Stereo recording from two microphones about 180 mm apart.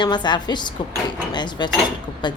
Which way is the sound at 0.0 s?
25° left (ahead or behind).